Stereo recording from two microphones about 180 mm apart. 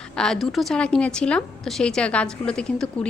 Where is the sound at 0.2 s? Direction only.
Centre (ahead or behind).